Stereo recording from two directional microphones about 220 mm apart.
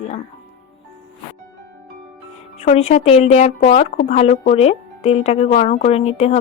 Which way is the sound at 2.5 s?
30° left (ahead or behind).